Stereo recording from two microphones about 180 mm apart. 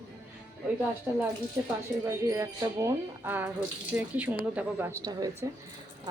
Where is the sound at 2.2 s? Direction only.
15° right (ahead or behind).